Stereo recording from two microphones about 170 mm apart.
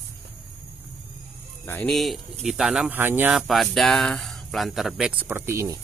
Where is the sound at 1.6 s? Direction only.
15° left (ahead or behind).